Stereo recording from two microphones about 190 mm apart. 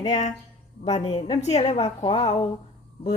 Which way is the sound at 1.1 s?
35° left (ahead or behind).